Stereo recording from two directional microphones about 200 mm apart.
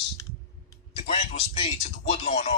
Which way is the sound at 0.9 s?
30° left (ahead or behind).